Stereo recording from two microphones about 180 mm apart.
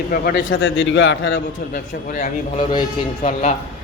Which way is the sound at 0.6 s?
90° left.